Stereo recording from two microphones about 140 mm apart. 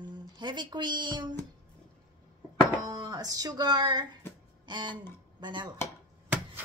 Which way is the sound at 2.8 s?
25° right (ahead or behind).